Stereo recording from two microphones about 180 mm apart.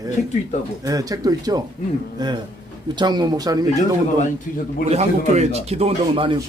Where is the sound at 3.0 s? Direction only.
25° right (ahead or behind).